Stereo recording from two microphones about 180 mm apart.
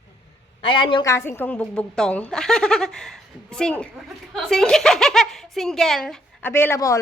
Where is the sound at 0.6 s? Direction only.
30° left (ahead or behind).